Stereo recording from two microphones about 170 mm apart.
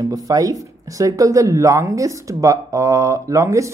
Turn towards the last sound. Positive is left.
turn(degrees=-20)  # may be behind; listen again after turning